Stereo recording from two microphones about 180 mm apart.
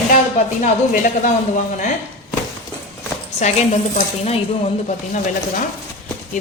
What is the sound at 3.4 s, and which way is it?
Speech, 40° left (ahead or behind).